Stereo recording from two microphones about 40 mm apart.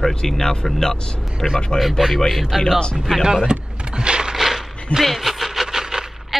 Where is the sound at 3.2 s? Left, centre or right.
Centre.